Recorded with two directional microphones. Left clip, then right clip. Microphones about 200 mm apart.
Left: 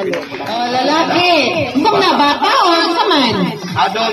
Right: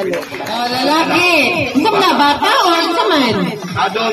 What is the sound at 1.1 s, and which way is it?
Speech, 25° right (ahead or behind).